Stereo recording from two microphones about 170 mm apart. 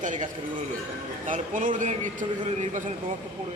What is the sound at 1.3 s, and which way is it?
Speech, 50° right (ahead or behind).